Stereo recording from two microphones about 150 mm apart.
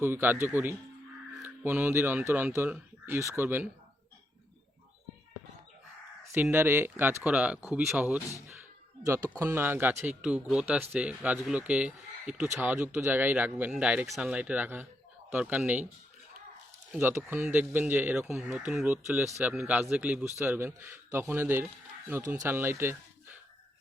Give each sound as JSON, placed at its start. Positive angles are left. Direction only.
{"t": 0.0, "sound": "a man's voice", "side_deg": -15}
{"t": 6.3, "sound": "a man's voice", "side_deg": -15}
{"t": 9.4, "sound": "a man's voice", "side_deg": -15}
{"t": 16.9, "sound": "a man's voice", "side_deg": -15}